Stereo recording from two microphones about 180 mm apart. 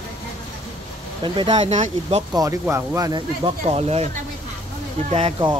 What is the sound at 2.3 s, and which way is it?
Speech, 20° right (ahead or behind).